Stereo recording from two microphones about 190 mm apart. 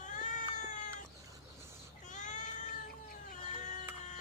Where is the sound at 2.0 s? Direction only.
40° left (ahead or behind).